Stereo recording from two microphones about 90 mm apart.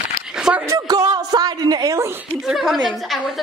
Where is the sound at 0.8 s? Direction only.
45° right (ahead or behind).